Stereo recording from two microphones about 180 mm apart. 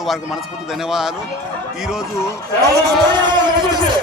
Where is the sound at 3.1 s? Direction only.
25° right (ahead or behind).